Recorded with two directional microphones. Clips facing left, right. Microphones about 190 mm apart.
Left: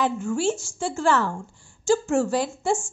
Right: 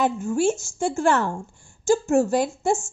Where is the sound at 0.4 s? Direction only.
45° right (ahead or behind).